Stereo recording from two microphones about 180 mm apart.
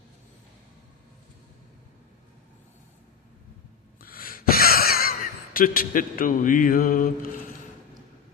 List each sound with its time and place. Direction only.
4.0 s gasp: 55° left (ahead or behind)
5.5 s speech: 55° left (ahead or behind)